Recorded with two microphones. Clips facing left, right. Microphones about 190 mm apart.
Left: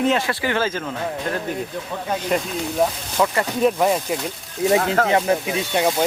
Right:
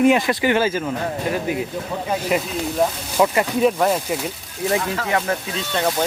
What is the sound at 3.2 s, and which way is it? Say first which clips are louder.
Speech: right 3 dB; 15° right (ahead or behind).